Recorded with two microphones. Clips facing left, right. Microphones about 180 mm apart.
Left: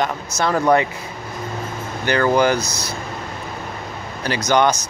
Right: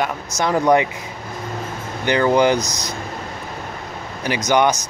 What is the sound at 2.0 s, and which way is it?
Speech, 20° right (ahead or behind).